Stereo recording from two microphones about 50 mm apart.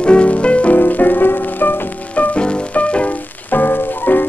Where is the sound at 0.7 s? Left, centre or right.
Left.